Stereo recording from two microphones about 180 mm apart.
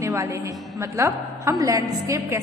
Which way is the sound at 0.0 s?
15° right (ahead or behind).